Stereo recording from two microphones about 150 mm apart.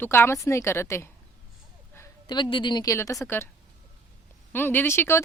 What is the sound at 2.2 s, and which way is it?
A woman's voice, 30° left (ahead or behind).